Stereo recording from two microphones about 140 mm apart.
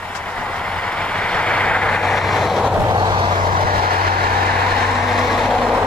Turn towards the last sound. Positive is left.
turn(degrees=0)  # may be behind; listen again after turning